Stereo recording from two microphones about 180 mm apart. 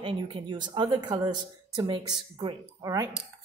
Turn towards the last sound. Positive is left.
turn(degrees=-20)  # may be behind; listen again after turning